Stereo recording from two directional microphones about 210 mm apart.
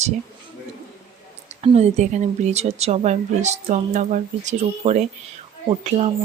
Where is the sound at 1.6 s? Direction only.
30° right (ahead or behind).